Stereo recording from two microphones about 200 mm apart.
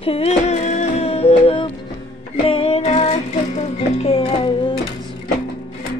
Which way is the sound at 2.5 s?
30° left (ahead or behind).